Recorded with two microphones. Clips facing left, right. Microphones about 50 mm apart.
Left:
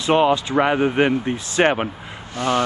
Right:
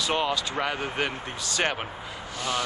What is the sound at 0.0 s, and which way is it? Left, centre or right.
Speech, left.